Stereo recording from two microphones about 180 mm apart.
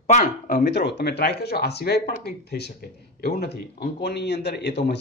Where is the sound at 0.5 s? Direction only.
65° left (ahead or behind).